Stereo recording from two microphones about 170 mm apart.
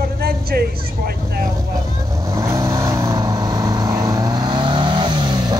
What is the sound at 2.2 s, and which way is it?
Vehicle, 20° right (ahead or behind).